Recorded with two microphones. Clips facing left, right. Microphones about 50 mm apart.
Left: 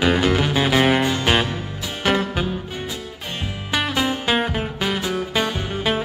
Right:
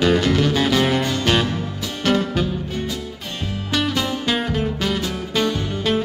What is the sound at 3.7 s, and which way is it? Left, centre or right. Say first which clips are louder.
Music: even; centre.